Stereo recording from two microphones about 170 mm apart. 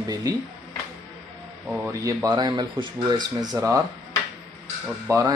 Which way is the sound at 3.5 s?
15° right (ahead or behind).